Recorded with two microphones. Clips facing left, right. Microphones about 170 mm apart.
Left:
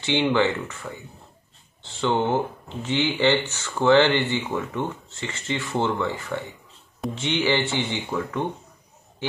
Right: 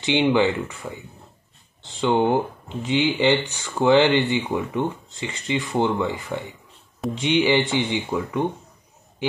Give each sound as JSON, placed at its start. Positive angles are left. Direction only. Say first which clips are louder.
{"t": 0.0, "sound": "speech", "louder": "right 2 dB", "side_deg": -15}